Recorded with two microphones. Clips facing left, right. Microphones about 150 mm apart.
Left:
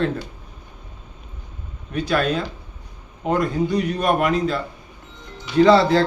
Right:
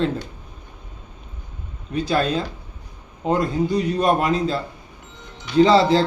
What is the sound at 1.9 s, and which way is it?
A man's voice, 30° right (ahead or behind).